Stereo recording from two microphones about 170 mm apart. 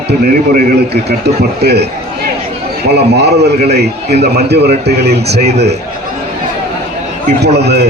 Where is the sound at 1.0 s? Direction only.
75° right (ahead or behind).